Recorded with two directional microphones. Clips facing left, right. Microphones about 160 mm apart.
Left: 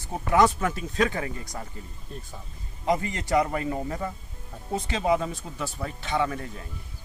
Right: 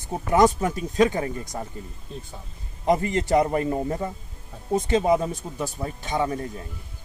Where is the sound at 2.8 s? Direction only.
40° right (ahead or behind).